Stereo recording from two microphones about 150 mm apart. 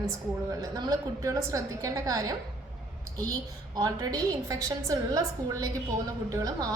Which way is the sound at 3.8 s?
25° right (ahead or behind).